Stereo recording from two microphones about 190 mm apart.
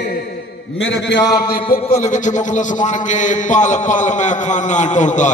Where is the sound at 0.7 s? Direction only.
70° left (ahead or behind).